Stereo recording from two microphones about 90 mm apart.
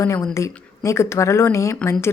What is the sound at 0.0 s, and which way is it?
A woman's voice, 30° left (ahead or behind).